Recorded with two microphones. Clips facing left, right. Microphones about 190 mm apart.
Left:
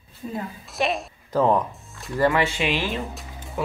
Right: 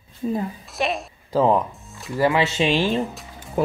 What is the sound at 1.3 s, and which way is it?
Speech, 15° right (ahead or behind).